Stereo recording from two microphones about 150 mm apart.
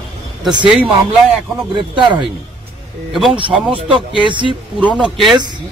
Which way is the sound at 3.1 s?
5° right (ahead or behind).